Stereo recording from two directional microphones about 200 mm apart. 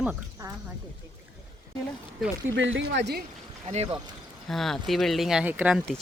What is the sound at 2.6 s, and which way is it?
Speech, 70° right (ahead or behind).